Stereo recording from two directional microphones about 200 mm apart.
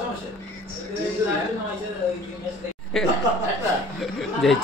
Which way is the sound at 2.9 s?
Centre (ahead or behind).